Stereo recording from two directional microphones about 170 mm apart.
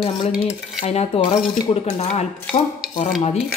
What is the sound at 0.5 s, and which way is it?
Dishes, 35° left (ahead or behind).